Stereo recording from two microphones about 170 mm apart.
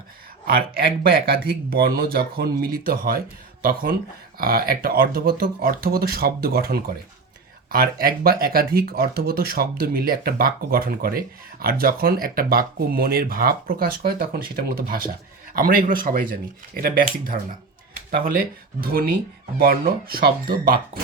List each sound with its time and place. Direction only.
0.4 s speech: 65° right (ahead or behind)